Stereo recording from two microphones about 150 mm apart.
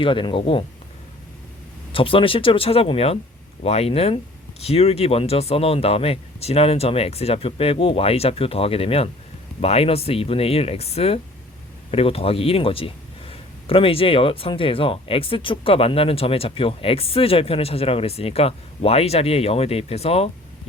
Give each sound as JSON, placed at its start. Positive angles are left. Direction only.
{"t": 0.0, "sound": "speech", "side_deg": 35}
{"t": 1.9, "sound": "speech", "side_deg": 35}